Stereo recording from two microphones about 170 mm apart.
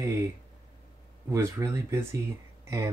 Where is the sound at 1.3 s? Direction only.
15° right (ahead or behind).